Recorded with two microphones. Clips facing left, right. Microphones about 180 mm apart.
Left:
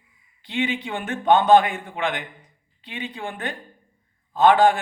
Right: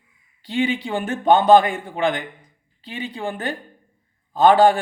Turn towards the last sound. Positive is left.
turn(degrees=-35)  # may be behind; listen again after turning